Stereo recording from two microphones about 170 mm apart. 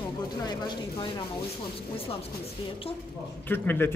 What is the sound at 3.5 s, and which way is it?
Speech, 10° left (ahead or behind).